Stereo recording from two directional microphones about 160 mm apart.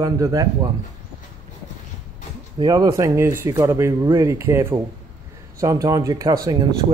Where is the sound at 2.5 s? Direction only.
25° right (ahead or behind).